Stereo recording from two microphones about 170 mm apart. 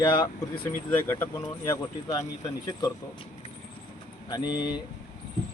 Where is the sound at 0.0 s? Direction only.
25° left (ahead or behind).